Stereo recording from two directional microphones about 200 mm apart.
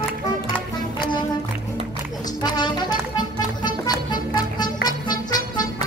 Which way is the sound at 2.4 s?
20° left (ahead or behind).